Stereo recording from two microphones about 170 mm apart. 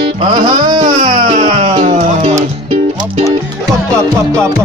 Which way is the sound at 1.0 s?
35° right (ahead or behind).